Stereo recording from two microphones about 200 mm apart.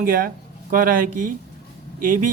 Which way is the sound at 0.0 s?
45° right (ahead or behind).